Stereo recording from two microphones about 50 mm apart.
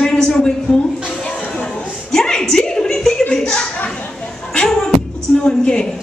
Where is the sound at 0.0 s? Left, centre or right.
Centre.